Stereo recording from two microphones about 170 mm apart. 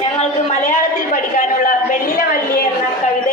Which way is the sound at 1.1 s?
55° left (ahead or behind).